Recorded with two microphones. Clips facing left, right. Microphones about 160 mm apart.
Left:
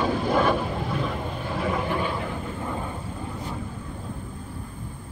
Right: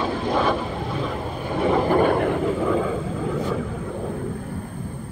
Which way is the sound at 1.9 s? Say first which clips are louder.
Right 10 dB; 55° right (ahead or behind).